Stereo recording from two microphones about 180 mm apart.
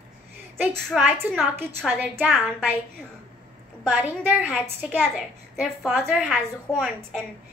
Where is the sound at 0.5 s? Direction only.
5° right (ahead or behind).